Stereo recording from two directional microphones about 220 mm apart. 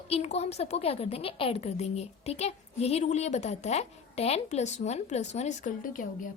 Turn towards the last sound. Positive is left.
turn(degrees=35)  # may be behind; listen again after turning